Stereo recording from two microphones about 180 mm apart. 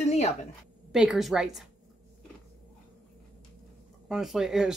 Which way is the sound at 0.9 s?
Centre (ahead or behind).